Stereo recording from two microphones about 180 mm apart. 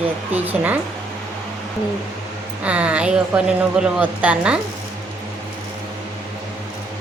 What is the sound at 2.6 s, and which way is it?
Speech, 5° right (ahead or behind).